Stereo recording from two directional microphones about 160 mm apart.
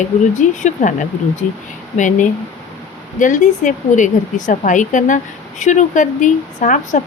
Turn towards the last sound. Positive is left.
turn(degrees=50)  # may be behind; listen again after turning